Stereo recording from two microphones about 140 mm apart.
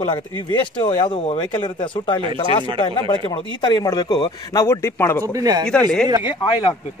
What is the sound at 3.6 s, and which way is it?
Speech, 30° left (ahead or behind).